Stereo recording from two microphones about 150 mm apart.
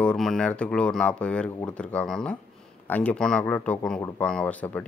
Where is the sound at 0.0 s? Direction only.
5° left (ahead or behind).